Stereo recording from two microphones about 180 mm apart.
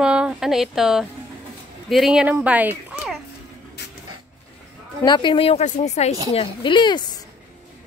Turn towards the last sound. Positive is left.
turn(degrees=25)  # may be behind; listen again after turning